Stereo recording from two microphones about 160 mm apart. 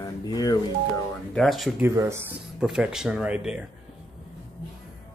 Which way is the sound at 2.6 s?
5° right (ahead or behind).